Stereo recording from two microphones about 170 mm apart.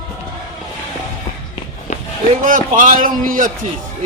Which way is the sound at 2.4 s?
55° right (ahead or behind).